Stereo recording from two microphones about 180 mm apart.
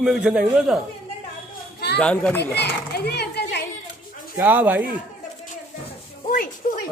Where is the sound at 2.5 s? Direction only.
65° left (ahead or behind).